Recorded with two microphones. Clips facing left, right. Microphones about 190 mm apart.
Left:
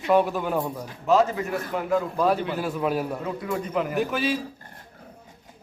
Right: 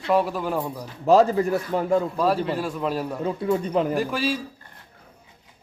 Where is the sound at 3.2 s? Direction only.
30° right (ahead or behind).